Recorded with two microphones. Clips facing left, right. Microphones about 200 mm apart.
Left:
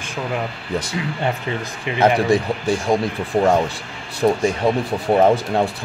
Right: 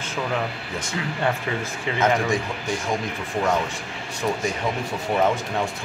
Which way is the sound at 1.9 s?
20° left (ahead or behind).